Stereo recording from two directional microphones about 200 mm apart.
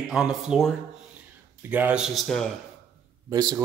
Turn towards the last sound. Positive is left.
turn(degrees=-20)  # may be behind; listen again after turning